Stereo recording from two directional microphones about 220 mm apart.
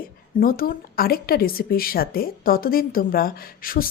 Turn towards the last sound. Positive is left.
turn(degrees=40)  # may be behind; listen again after turning